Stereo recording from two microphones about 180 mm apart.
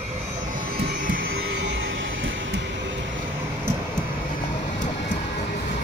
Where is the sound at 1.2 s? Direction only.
90° right.